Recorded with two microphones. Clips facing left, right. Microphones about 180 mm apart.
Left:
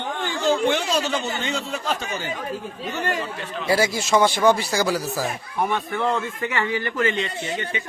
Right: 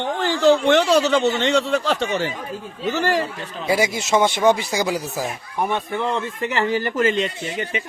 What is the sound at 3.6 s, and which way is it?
A man's voice, 20° right (ahead or behind).